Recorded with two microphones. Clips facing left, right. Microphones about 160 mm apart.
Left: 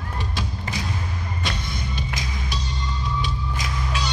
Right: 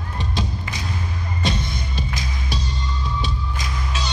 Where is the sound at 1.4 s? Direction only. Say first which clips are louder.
Right 6 dB; 25° right (ahead or behind).